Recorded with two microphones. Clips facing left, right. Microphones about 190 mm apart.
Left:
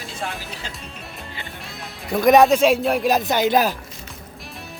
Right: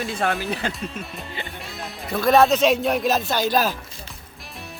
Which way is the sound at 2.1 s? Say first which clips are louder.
Left 3 dB; 15° left (ahead or behind).